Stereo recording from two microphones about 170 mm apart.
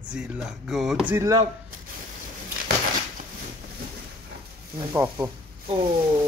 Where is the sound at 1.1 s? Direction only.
20° right (ahead or behind).